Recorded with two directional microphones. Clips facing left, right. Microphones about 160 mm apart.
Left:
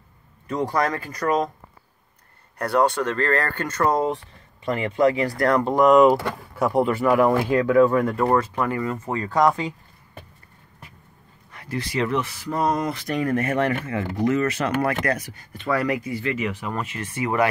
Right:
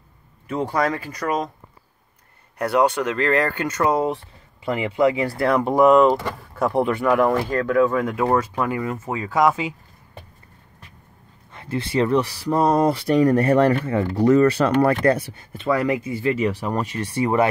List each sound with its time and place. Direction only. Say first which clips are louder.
2.6 s speech: right 1 dB; 5° right (ahead or behind)
5.9 s speech: left 1 dB; 5° left (ahead or behind)
11.5 s speech: right 4 dB; 25° right (ahead or behind)